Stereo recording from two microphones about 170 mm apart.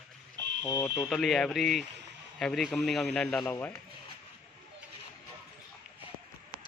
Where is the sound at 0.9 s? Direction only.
Centre (ahead or behind).